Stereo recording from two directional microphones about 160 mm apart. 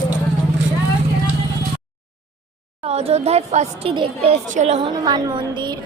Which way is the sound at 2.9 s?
40° right (ahead or behind).